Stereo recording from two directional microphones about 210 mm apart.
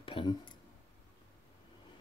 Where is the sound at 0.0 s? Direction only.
25° left (ahead or behind).